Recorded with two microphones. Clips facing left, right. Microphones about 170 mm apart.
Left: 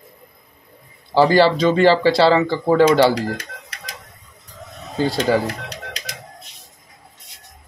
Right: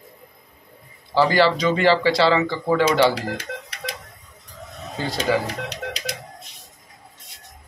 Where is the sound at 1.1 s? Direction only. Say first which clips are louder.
Left 4 dB; 30° left (ahead or behind).